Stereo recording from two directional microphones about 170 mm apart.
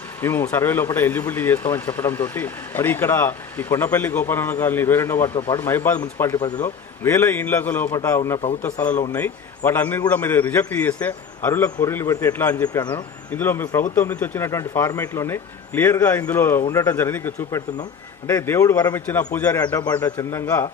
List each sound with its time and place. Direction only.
0.2 s speech: 15° left (ahead or behind)
12.6 s a man's voice: 25° left (ahead or behind)
12.9 s a man's voice: 10° left (ahead or behind)